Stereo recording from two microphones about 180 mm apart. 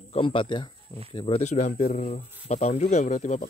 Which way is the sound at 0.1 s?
30° left (ahead or behind).